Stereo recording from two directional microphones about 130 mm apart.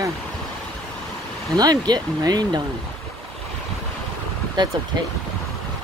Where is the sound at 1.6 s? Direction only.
30° right (ahead or behind).